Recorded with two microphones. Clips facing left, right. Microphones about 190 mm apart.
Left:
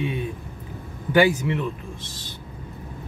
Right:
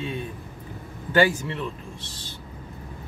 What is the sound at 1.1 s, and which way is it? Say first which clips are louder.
Speech: left 3 dB; 15° left (ahead or behind).